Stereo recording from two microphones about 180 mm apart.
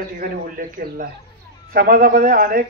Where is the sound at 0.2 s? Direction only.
50° right (ahead or behind).